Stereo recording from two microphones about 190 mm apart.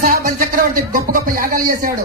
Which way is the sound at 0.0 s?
45° right (ahead or behind).